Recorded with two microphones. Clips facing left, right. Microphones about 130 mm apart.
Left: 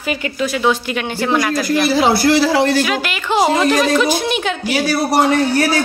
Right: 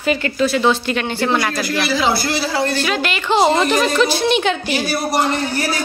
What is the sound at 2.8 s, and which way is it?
A woman's voice, 5° left (ahead or behind).